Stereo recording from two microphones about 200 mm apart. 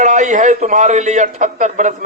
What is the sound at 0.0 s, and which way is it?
A man's voice, 40° right (ahead or behind).